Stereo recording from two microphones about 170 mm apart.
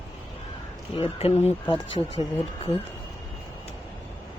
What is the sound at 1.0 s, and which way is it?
Speech, 35° left (ahead or behind).